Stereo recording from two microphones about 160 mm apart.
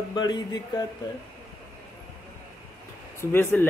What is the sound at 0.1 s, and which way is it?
Speech, 25° left (ahead or behind).